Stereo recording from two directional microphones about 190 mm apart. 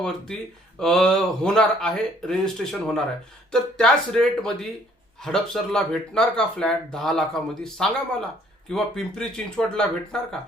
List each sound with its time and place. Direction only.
0.8 s speech: 5° left (ahead or behind)